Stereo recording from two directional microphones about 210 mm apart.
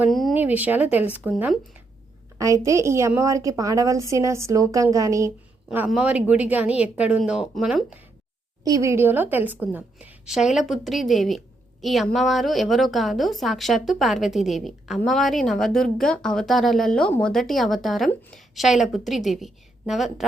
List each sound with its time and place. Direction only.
0.0 s a woman's voice: centre (ahead or behind)
2.6 s a woman's voice: 15° right (ahead or behind)
5.6 s a woman's voice: 5° right (ahead or behind)